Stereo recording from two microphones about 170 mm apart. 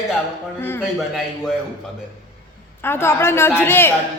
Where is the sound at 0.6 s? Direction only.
15° left (ahead or behind).